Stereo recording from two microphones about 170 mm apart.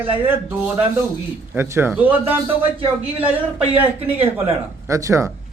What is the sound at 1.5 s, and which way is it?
Speech, 15° right (ahead or behind).